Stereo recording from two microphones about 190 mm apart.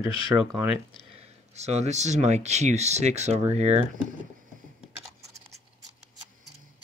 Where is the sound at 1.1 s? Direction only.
35° right (ahead or behind).